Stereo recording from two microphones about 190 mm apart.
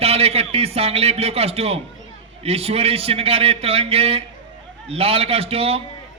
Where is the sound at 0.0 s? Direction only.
30° right (ahead or behind).